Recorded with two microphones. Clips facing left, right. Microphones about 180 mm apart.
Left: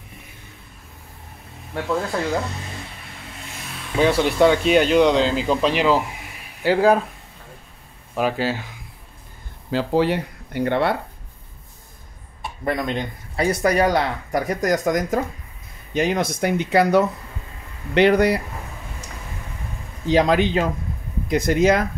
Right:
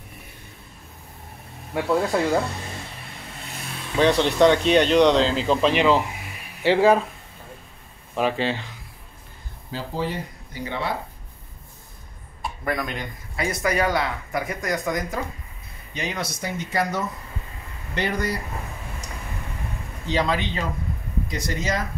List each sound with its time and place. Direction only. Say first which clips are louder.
4.0 s speech: left 1 dB; 5° left (ahead or behind)
8.2 s speech: left 1 dB; 5° left (ahead or behind)
9.7 s speech: left 9 dB; 75° left (ahead or behind)
12.6 s speech: left 4 dB; 25° left (ahead or behind); by 18.4 s 65° left (ahead or behind)
20.1 s speech: left 7 dB; 45° left (ahead or behind)
21.3 s speech: left 11 dB; 55° left (ahead or behind)